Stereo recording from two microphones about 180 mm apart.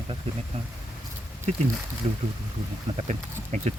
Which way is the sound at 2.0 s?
35° right (ahead or behind).